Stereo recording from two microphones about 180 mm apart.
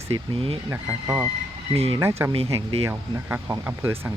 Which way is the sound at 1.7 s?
35° right (ahead or behind).